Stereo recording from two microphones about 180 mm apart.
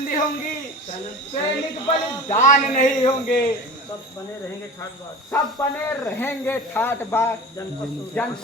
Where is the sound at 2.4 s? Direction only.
45° left (ahead or behind).